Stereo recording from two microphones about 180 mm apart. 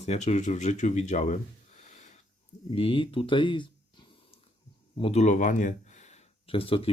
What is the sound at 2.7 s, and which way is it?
Speech, 30° left (ahead or behind).